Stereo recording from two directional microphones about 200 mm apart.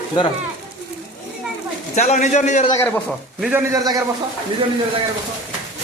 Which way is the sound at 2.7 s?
10° left (ahead or behind).